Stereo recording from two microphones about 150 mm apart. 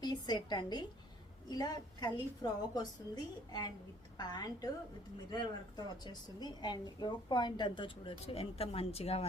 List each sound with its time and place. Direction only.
0.0 s a woman's voice: 30° left (ahead or behind)